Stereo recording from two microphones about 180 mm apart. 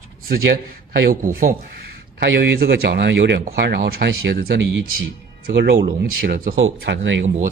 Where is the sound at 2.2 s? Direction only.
75° right (ahead or behind).